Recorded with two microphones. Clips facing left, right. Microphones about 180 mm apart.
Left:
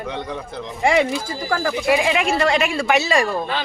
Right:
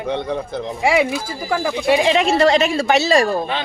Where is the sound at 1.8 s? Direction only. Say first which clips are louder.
Right 4 dB; 30° right (ahead or behind).